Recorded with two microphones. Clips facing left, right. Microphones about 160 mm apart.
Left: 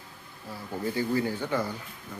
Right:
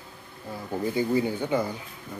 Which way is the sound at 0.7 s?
15° right (ahead or behind).